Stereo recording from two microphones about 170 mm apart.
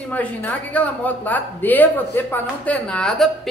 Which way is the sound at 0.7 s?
10° left (ahead or behind).